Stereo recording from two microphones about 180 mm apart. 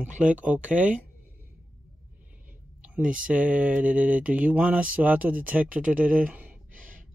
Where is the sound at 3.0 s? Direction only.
5° right (ahead or behind).